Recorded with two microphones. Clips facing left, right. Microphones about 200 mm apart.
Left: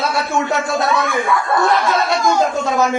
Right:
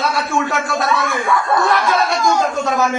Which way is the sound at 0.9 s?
Centre (ahead or behind).